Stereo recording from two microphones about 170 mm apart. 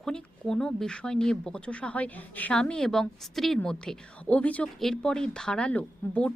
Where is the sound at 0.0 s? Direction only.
5° left (ahead or behind).